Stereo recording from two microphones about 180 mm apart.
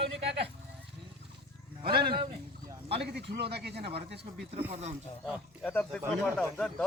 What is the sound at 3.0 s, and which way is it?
Speech, 70° right (ahead or behind).